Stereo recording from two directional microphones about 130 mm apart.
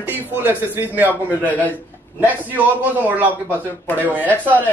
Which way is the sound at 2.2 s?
15° right (ahead or behind).